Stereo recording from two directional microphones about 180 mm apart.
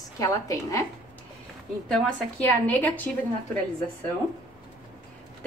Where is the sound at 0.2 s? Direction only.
20° left (ahead or behind).